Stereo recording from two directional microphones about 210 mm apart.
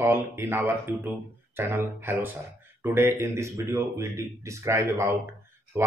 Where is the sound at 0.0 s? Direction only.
10° right (ahead or behind).